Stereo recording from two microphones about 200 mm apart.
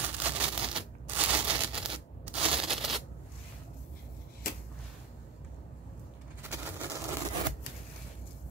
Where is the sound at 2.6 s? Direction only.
Centre (ahead or behind).